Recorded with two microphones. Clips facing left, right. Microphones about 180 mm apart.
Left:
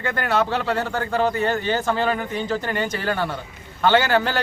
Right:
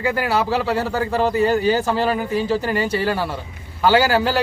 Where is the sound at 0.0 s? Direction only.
5° right (ahead or behind).